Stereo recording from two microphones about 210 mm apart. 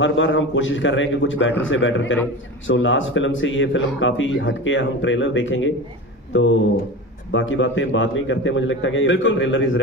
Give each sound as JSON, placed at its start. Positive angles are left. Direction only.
{"t": 0.0, "sound": "speech", "side_deg": 60}